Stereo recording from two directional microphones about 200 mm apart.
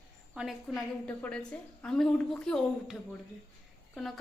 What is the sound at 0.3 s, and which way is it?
A woman's voice, centre (ahead or behind).